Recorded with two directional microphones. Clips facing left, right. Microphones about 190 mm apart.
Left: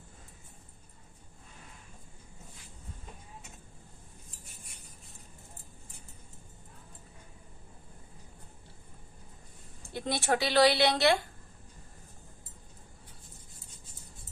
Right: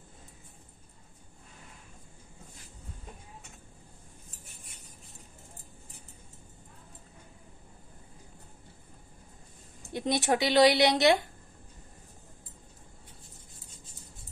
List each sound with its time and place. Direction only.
9.9 s a woman's voice: 20° right (ahead or behind)